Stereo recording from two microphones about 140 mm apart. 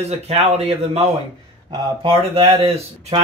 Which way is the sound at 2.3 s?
45° right (ahead or behind).